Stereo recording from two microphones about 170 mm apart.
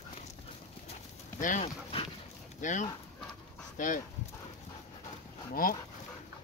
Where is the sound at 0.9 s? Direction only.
50° left (ahead or behind).